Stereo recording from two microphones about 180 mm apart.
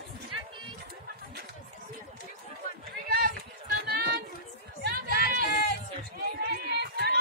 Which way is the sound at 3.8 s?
60° right (ahead or behind).